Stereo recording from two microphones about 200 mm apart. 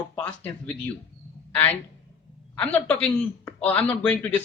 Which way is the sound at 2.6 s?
10° left (ahead or behind).